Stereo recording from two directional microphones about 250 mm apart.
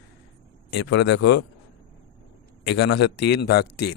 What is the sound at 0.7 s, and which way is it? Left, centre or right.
Speech, left.